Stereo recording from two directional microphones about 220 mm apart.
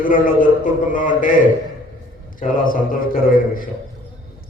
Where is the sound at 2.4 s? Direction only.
40° left (ahead or behind).